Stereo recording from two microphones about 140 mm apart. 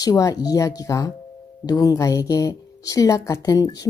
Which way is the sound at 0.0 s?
25° left (ahead or behind).